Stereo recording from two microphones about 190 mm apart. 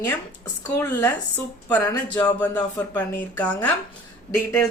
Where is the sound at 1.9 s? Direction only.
20° left (ahead or behind).